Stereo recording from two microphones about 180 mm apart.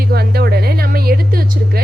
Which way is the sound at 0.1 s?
60° right (ahead or behind).